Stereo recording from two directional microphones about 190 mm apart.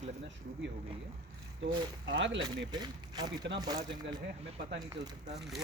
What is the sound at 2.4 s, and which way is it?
Speech, 20° right (ahead or behind).